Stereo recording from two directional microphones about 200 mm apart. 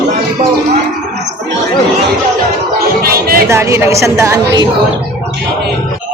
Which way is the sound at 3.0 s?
50° right (ahead or behind).